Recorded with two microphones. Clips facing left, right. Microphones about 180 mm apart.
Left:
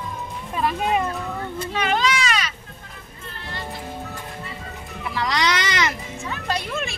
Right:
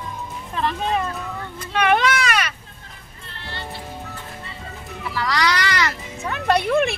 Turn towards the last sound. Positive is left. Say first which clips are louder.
# right 9 dB
turn(degrees=-60)  # may be behind; listen again after turning